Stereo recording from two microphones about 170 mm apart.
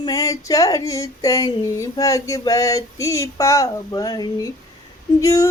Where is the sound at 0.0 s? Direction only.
20° left (ahead or behind).